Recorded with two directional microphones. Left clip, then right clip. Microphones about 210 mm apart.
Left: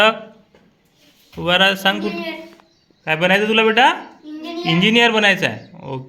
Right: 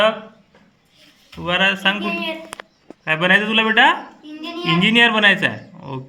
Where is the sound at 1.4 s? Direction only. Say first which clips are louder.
Left 2 dB; 30° left (ahead or behind).